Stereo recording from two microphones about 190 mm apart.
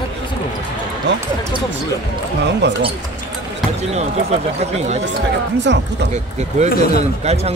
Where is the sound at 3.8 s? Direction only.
35° right (ahead or behind).